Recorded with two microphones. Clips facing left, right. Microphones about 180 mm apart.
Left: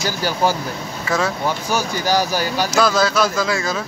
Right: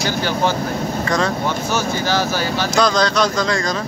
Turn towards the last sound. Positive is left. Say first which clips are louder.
# right 1 dB
turn(degrees=5)  # may be behind; listen again after turning